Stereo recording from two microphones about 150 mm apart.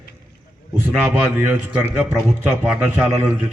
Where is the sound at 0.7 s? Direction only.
15° right (ahead or behind).